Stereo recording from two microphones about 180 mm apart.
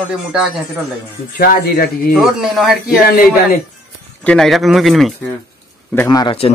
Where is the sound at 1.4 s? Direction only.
60° left (ahead or behind).